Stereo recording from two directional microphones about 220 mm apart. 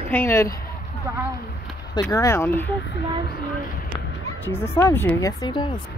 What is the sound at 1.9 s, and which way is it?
Speech, 15° left (ahead or behind).